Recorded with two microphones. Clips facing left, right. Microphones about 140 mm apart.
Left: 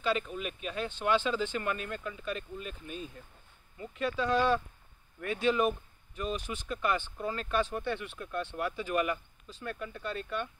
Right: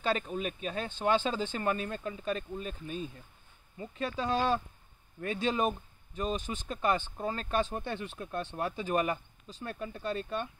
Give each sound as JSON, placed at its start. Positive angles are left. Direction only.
{"t": 0.0, "sound": "speech", "side_deg": -40}